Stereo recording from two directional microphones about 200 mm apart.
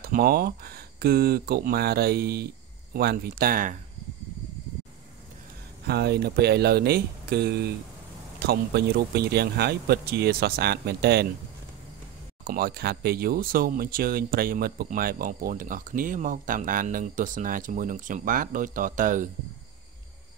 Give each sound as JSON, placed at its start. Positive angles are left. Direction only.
{"t": 0.0, "sound": "speech", "side_deg": -50}
{"t": 5.9, "sound": "speech", "side_deg": -55}
{"t": 12.4, "sound": "speech", "side_deg": -50}